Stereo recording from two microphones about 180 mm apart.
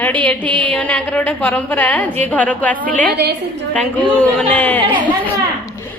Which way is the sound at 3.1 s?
65° right (ahead or behind).